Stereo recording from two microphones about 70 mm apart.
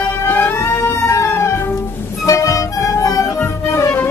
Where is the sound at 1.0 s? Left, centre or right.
Left.